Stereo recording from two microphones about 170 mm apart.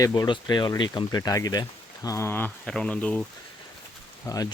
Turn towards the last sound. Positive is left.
turn(degrees=20)  # may be behind; listen again after turning